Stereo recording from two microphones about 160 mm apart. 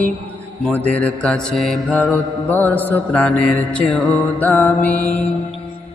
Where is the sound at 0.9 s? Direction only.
5° left (ahead or behind).